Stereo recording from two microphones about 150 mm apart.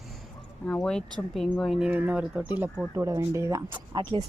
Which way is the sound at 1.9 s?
10° right (ahead or behind).